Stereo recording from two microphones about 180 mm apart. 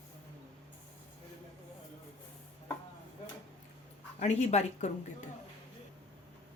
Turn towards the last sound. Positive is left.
turn(degrees=40)  # may be behind; listen again after turning